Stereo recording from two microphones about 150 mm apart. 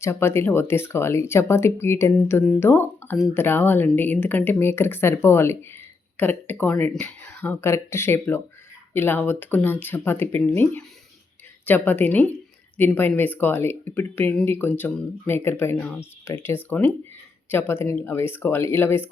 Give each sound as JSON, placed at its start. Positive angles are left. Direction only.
{"t": 0.0, "sound": "speech", "side_deg": 15}